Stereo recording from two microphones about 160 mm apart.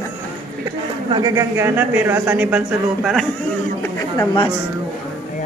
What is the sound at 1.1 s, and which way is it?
A man's voice, 25° right (ahead or behind).